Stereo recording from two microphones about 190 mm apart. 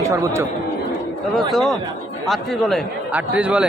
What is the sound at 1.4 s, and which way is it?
A man's voice, centre (ahead or behind).